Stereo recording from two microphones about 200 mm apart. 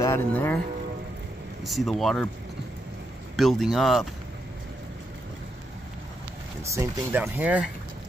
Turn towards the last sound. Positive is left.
turn(degrees=-5)  # may be behind; listen again after turning